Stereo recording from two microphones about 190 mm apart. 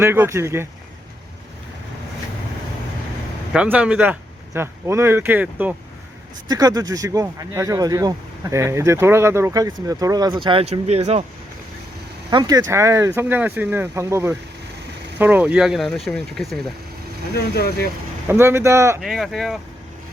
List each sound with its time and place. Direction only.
0.0 s speech: 10° right (ahead or behind)
3.5 s speech: 5° right (ahead or behind)
6.5 s speech: 20° right (ahead or behind)
12.3 s speech: 20° right (ahead or behind); by 16.7 s centre (ahead or behind)
17.3 s speech: 55° left (ahead or behind)
18.3 s speech: 15° right (ahead or behind)
19.0 s speech: centre (ahead or behind)